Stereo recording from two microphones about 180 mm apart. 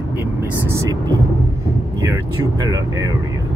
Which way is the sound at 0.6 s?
20° right (ahead or behind).